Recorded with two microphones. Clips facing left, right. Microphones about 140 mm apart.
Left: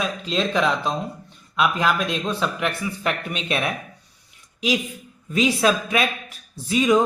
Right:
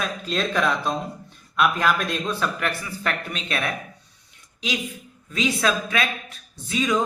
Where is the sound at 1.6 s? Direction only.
10° left (ahead or behind).